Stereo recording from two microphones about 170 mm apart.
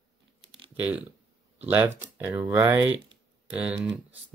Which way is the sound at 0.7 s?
10° right (ahead or behind).